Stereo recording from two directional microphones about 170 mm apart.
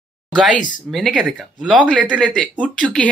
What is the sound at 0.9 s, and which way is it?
Speech, 5° left (ahead or behind).